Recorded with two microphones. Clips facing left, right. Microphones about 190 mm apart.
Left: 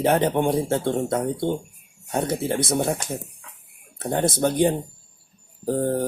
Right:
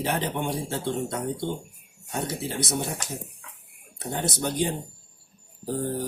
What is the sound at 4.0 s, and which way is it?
Speech, 55° left (ahead or behind).